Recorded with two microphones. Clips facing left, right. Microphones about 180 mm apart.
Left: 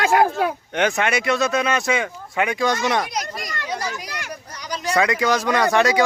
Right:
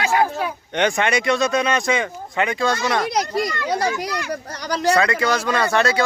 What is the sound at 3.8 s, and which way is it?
Speech, 70° right (ahead or behind).